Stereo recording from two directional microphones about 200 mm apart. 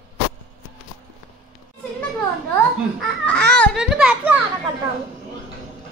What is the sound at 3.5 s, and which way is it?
Speech, 5° left (ahead or behind).